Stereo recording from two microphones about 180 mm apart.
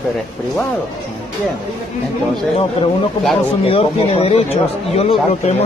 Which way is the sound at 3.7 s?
35° left (ahead or behind).